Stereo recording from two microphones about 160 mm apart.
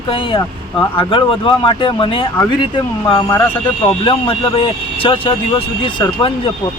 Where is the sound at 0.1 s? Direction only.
35° left (ahead or behind).